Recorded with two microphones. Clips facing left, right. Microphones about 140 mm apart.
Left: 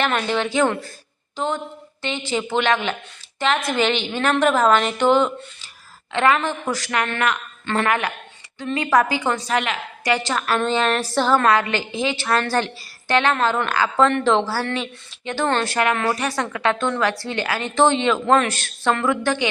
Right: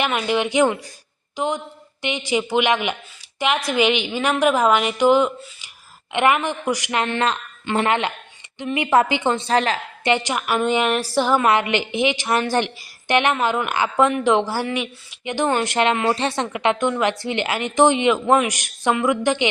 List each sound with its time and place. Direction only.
0.0 s a woman's voice: 10° right (ahead or behind)